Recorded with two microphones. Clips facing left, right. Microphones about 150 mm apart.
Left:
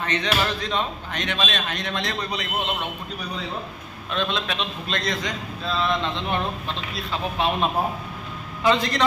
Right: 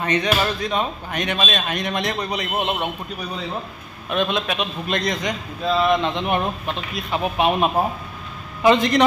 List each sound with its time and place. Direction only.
0.0 s a man's voice: 10° right (ahead or behind)
4.1 s a man's voice: 15° right (ahead or behind)